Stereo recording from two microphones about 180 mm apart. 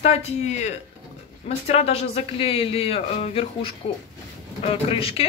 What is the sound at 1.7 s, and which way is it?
Speech, 35° left (ahead or behind).